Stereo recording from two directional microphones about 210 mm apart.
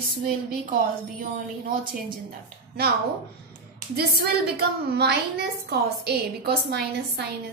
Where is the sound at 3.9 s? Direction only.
50° right (ahead or behind).